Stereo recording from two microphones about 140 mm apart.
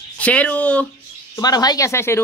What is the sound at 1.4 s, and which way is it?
Speech, 25° left (ahead or behind).